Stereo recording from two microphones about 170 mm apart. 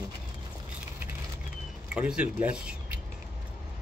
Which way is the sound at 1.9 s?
5° right (ahead or behind).